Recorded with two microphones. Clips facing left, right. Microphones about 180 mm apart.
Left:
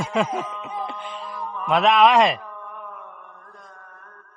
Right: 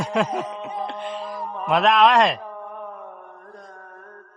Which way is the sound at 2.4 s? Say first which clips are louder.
Right 4 dB; 30° right (ahead or behind).